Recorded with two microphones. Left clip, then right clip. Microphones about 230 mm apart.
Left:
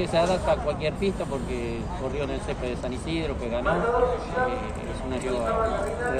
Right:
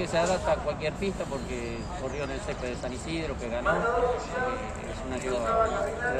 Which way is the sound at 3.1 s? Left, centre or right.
Centre.